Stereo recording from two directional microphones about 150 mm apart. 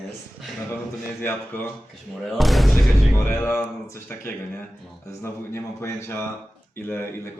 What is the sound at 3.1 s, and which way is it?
Speech, 15° left (ahead or behind).